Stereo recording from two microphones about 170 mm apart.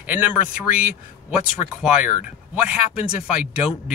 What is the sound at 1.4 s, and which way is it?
Speech, 5° right (ahead or behind).